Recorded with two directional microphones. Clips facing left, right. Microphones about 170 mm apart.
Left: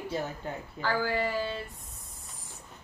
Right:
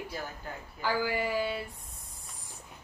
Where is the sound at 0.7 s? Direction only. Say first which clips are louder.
Left 1 dB; 10° right (ahead or behind).